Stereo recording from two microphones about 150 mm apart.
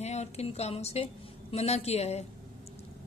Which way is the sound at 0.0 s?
45° left (ahead or behind).